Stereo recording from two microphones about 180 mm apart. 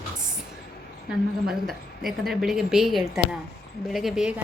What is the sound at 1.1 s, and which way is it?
A woman's voice, centre (ahead or behind).